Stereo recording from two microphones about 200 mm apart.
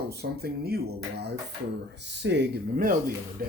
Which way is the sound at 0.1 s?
55° right (ahead or behind).